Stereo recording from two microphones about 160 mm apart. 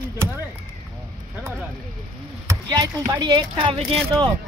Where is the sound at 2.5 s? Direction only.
20° right (ahead or behind).